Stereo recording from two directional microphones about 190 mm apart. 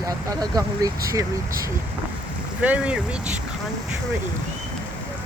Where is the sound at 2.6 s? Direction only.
5° right (ahead or behind).